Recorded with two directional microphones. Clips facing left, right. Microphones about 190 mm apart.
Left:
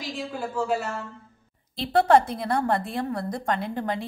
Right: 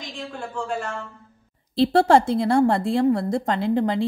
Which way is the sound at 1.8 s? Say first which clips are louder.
Right 3 dB; 30° right (ahead or behind).